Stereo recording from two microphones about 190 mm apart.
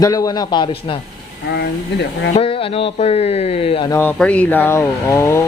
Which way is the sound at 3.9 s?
10° left (ahead or behind).